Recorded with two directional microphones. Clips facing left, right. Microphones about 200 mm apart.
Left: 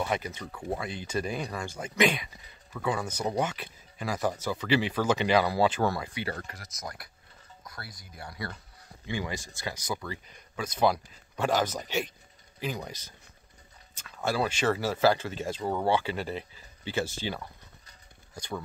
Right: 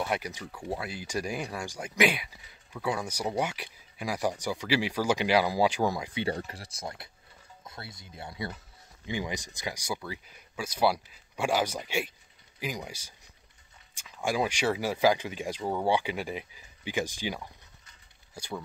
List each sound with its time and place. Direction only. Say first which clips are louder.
0.0 s speech: left 1 dB; 10° right (ahead or behind)
6.1 s speech: right 4 dB; 30° right (ahead or behind); by 18.6 s 5° right (ahead or behind)